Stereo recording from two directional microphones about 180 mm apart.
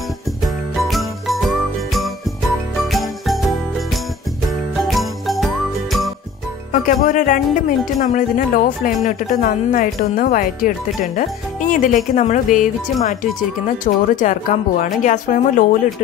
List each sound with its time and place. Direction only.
0.4 s jingle bell: centre (ahead or behind)
4.5 s jingle: centre (ahead or behind)
6.7 s speech: 45° left (ahead or behind)